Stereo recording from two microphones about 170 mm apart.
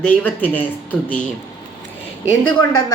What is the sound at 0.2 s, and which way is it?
Speech, 10° left (ahead or behind).